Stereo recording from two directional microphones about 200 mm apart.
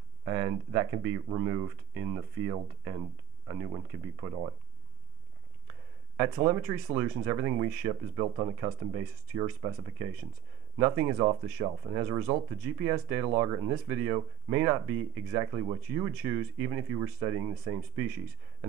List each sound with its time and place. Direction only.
0.2 s speech: 15° right (ahead or behind)
6.3 s speech: 15° right (ahead or behind)
7.9 s speech: 25° right (ahead or behind)